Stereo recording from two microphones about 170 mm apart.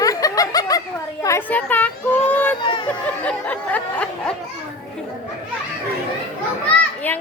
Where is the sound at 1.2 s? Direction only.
15° left (ahead or behind).